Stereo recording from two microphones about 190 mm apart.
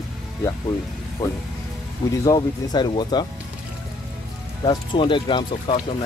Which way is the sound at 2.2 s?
20° left (ahead or behind).